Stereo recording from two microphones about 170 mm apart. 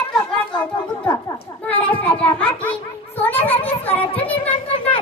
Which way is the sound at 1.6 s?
10° left (ahead or behind).